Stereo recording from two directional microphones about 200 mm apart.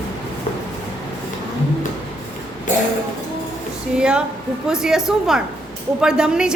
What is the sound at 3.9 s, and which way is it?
A woman's voice, 5° right (ahead or behind).